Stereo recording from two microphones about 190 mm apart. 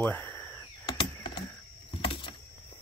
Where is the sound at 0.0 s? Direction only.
10° left (ahead or behind).